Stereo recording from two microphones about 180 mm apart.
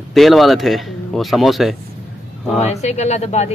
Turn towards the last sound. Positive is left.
turn(degrees=35)  # may be behind; listen again after turning